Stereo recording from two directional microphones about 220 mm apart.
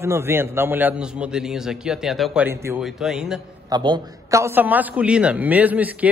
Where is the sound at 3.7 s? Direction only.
20° right (ahead or behind).